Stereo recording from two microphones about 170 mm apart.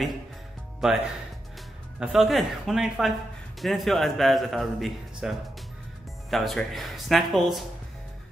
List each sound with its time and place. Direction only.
0.7 s a man's voice: 5° right (ahead or behind)
6.3 s a man's voice: centre (ahead or behind)